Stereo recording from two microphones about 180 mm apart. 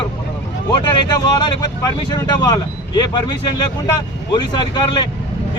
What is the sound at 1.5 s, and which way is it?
Speech, 20° left (ahead or behind).